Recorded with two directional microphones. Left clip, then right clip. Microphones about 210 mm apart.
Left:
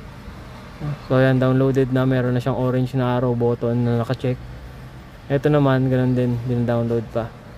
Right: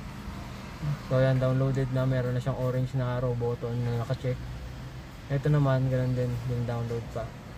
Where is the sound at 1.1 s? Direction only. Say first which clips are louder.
Left 9 dB; 50° left (ahead or behind).